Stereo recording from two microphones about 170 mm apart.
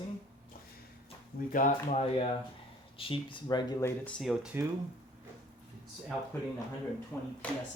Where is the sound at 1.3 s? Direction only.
60° left (ahead or behind).